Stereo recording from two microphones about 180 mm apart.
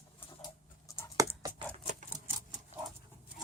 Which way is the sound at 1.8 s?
40° right (ahead or behind).